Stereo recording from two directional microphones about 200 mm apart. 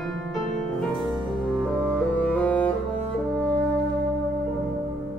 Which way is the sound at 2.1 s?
5° left (ahead or behind).